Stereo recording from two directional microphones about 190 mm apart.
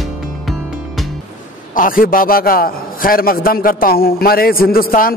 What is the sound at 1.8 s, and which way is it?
A man's voice, 45° left (ahead or behind).